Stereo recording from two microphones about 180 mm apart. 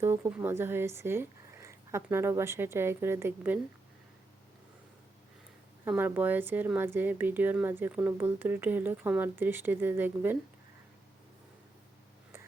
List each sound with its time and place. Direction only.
0.0 s speech: 10° right (ahead or behind)
5.8 s speech: 10° right (ahead or behind)